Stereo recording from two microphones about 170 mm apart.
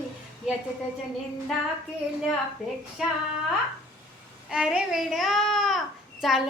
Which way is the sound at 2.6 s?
5° right (ahead or behind).